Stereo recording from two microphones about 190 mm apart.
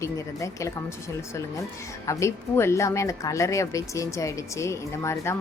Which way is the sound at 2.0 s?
15° left (ahead or behind).